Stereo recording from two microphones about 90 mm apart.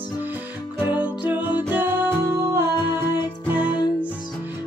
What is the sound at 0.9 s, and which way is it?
Music, 20° right (ahead or behind).